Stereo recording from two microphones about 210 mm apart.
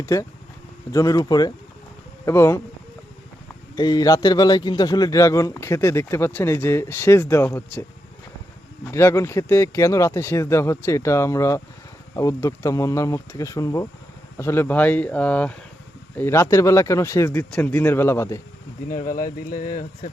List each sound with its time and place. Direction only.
0.0 s a man's voice: 15° left (ahead or behind)
3.8 s a man's voice: 20° left (ahead or behind)
8.9 s a man's voice: 10° left (ahead or behind)
18.9 s speech: 40° left (ahead or behind)